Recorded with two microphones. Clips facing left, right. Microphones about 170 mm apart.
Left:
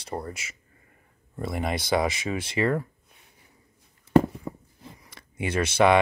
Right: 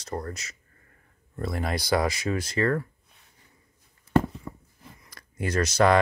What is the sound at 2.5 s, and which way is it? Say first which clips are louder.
Speech: left 1 dB; 15° left (ahead or behind).